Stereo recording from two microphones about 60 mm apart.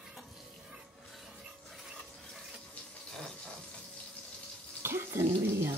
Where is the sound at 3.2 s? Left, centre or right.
Centre.